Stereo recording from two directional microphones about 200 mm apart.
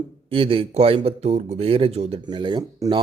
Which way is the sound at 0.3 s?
25° right (ahead or behind).